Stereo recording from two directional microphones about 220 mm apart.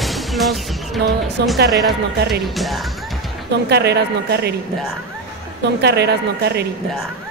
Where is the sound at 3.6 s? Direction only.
50° right (ahead or behind).